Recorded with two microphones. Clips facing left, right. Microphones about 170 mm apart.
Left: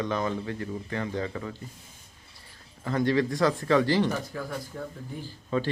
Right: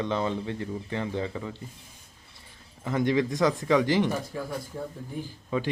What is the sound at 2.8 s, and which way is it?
Speech, 20° right (ahead or behind).